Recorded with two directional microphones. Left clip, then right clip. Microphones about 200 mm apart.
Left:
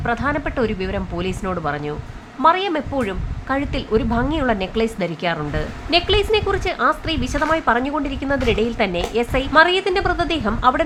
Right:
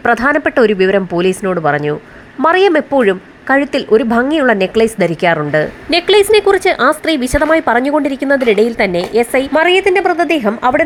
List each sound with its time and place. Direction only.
0.0 s speech: 35° right (ahead or behind)